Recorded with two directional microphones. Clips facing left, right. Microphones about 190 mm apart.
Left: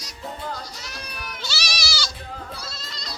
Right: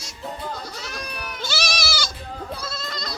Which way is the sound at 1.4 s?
50° right (ahead or behind).